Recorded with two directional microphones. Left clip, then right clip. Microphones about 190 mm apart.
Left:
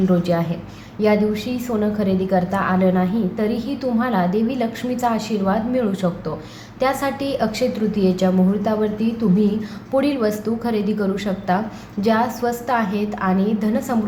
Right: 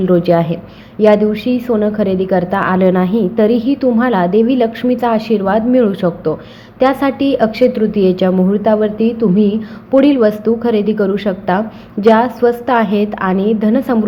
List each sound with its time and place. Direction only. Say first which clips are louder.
0.1 s a woman's voice: right 9 dB; 30° right (ahead or behind)